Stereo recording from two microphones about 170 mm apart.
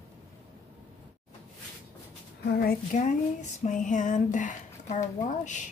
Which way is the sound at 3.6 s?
50° left (ahead or behind).